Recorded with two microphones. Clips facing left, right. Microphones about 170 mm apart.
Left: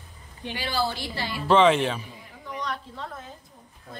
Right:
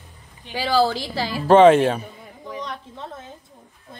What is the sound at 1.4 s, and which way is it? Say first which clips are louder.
Speech: right 7 dB; 50° right (ahead or behind).